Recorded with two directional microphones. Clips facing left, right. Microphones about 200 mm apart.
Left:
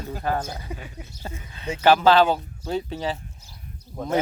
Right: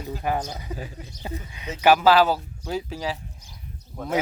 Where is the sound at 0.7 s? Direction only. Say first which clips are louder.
Right 2 dB; 10° left (ahead or behind).